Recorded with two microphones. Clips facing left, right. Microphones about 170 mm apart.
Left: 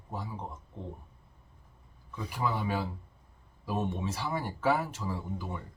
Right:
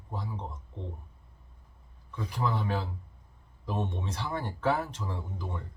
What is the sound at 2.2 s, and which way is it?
Speech, 10° left (ahead or behind).